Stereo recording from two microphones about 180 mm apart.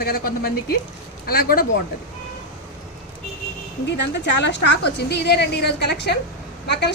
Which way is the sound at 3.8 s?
75° left (ahead or behind).